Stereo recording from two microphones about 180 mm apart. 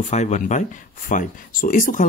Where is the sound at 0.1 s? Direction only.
40° left (ahead or behind).